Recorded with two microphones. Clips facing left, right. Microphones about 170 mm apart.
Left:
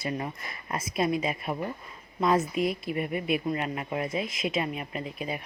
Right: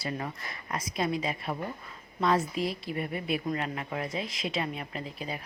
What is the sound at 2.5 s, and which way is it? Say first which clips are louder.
Speech: left 4 dB; 30° right (ahead or behind).